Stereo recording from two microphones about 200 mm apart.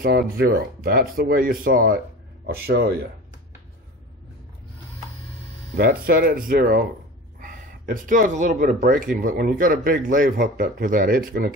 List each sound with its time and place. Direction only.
0.0 s speech: 50° right (ahead or behind)
5.8 s speech: 45° right (ahead or behind)